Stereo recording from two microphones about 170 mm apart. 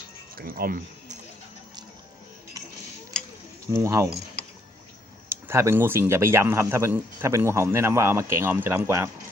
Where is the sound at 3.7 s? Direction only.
15° right (ahead or behind).